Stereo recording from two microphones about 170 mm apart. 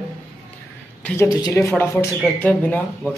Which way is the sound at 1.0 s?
10° left (ahead or behind).